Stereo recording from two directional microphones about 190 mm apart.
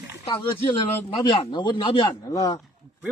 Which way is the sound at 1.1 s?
25° left (ahead or behind).